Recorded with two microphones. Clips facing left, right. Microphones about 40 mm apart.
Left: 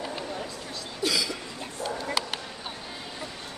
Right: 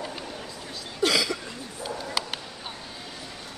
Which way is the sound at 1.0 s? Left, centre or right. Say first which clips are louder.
Right 4 dB; right.